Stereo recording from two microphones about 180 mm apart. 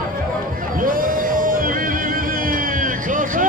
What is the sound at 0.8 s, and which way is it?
Music, 50° right (ahead or behind).